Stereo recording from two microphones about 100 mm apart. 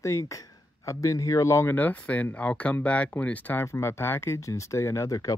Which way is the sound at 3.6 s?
25° left (ahead or behind).